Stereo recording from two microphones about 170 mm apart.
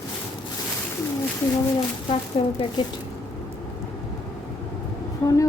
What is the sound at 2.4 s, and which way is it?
Speech, 30° left (ahead or behind).